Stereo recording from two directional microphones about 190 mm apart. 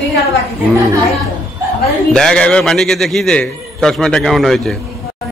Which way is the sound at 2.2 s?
5° left (ahead or behind).